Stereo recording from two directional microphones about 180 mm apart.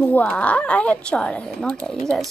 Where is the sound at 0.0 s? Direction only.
10° left (ahead or behind).